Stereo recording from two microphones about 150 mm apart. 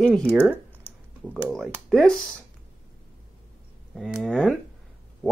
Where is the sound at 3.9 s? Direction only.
Centre (ahead or behind).